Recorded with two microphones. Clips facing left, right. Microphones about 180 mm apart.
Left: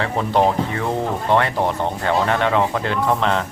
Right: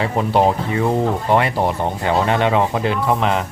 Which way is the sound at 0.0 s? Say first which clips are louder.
Right 2 dB; 15° right (ahead or behind).